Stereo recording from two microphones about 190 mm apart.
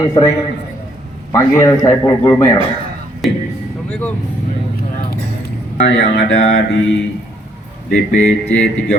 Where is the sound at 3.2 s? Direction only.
Centre (ahead or behind).